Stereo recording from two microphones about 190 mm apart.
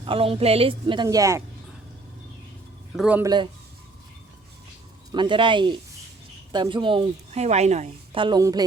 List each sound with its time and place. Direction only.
0.0 s a woman's voice: 30° right (ahead or behind)
2.9 s speech: 5° right (ahead or behind)
3.2 s a woman's voice: 25° right (ahead or behind)
5.1 s a woman's voice: 25° right (ahead or behind)